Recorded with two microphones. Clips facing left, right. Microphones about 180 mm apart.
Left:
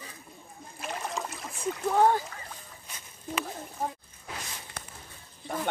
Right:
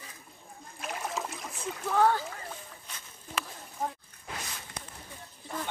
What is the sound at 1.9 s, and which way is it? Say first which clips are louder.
Speech: left 2 dB; 20° left (ahead or behind).